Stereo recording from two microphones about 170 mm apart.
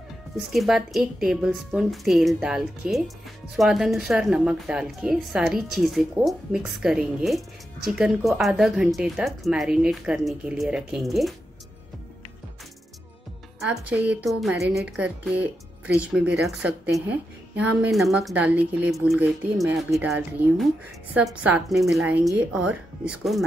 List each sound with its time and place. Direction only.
0.4 s a woman's voice: centre (ahead or behind)
13.7 s a woman's voice: 10° right (ahead or behind)
14.6 s a woman's voice: 70° right (ahead or behind)
14.9 s a woman's voice: 5° right (ahead or behind)
21.1 s a woman's voice: 10° right (ahead or behind)